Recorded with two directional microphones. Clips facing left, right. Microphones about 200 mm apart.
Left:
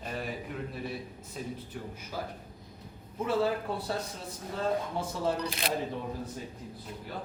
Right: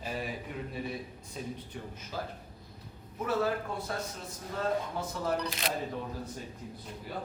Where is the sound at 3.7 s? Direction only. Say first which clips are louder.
Left 3 dB; 35° left (ahead or behind).